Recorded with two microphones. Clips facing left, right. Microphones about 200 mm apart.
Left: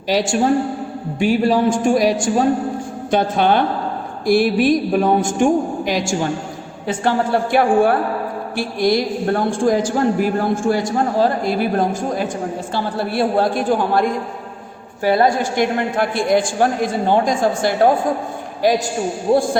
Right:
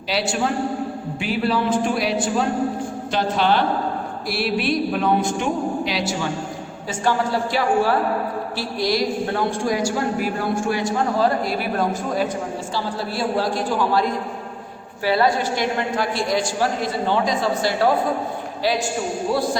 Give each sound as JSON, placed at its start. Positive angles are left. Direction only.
{"t": 0.1, "sound": "a woman's voice", "side_deg": 45}
{"t": 12.7, "sound": "a woman's voice", "side_deg": 55}